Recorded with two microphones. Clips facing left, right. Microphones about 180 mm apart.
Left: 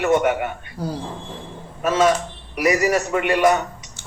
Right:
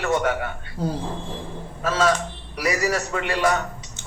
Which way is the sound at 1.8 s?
15° left (ahead or behind).